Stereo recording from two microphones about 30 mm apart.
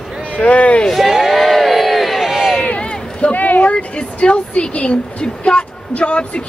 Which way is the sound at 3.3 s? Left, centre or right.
Left.